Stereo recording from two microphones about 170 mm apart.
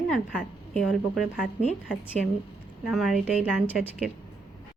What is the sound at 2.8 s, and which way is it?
A woman's voice, centre (ahead or behind).